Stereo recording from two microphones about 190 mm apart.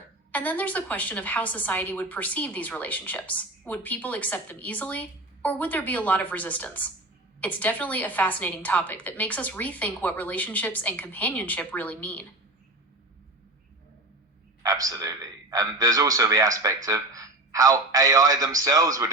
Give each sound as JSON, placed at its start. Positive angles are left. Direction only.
{"t": 0.3, "sound": "a woman's voice", "side_deg": 10}
{"t": 14.6, "sound": "a man's voice", "side_deg": -15}